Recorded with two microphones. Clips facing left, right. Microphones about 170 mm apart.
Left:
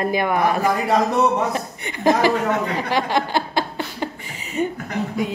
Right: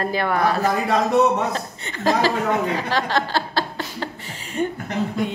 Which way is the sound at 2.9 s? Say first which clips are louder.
Left 5 dB; 15° left (ahead or behind).